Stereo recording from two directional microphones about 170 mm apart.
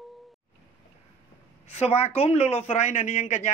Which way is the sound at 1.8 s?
40° left (ahead or behind).